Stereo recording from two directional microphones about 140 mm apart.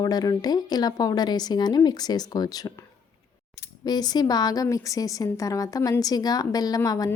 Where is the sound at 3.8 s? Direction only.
30° left (ahead or behind).